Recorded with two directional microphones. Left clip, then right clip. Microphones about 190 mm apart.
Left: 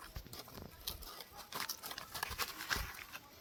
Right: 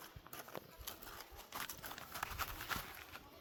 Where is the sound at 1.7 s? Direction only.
10° right (ahead or behind).